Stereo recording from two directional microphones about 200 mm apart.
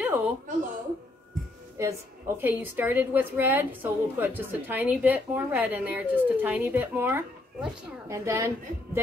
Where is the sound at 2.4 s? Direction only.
10° right (ahead or behind).